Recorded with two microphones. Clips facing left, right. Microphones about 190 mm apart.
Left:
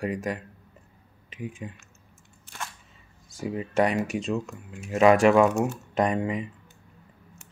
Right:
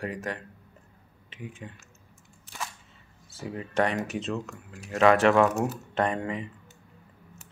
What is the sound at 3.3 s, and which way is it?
Speech, 15° left (ahead or behind).